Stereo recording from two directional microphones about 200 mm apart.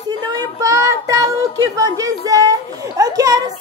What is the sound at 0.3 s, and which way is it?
Child singing, 15° right (ahead or behind).